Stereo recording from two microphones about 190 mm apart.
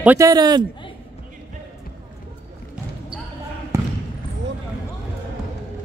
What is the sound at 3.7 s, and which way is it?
Basketball bounce, 15° right (ahead or behind).